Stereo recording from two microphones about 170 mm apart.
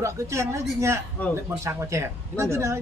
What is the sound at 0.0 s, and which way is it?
A woman's voice, 15° right (ahead or behind).